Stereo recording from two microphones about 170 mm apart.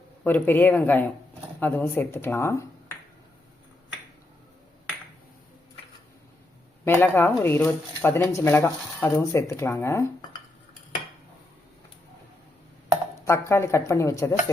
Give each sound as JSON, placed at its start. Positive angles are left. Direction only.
{"t": 0.3, "sound": "speech", "side_deg": 10}
{"t": 6.8, "sound": "speech", "side_deg": 10}
{"t": 13.2, "sound": "speech", "side_deg": 15}